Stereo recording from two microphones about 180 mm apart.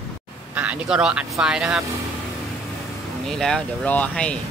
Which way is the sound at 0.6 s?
5° right (ahead or behind).